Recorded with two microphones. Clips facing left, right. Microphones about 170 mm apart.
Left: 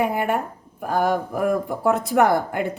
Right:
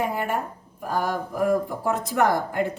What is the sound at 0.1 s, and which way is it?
A woman's voice, 65° left (ahead or behind).